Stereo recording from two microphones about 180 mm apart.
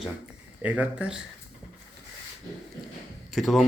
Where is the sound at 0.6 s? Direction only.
10° right (ahead or behind).